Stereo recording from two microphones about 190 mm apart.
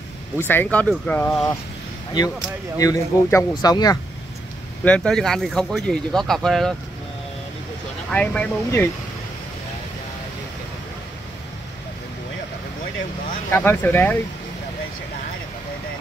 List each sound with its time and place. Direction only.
0.4 s speech: 10° left (ahead or behind)
2.8 s speech: 15° left (ahead or behind)
4.8 s speech: 5° left (ahead or behind)
8.1 s speech: 5° left (ahead or behind)
13.5 s speech: 10° left (ahead or behind)